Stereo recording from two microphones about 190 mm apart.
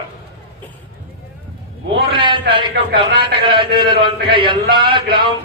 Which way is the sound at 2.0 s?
25° right (ahead or behind).